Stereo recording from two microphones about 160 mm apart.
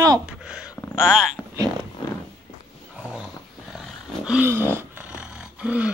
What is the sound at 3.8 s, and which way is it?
Roaring cats, 5° right (ahead or behind).